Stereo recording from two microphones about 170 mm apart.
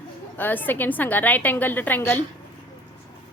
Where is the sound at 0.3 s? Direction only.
10° left (ahead or behind).